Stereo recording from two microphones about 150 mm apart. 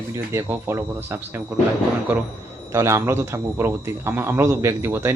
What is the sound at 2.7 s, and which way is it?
Speech, 20° right (ahead or behind).